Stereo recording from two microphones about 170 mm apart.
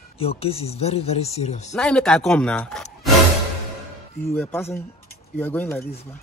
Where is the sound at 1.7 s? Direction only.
5° left (ahead or behind).